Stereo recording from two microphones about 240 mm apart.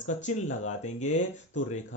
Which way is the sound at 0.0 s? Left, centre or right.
Left.